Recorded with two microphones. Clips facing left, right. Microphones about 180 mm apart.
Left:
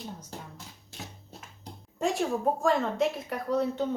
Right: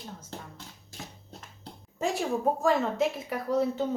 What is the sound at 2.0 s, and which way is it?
A woman's voice, centre (ahead or behind).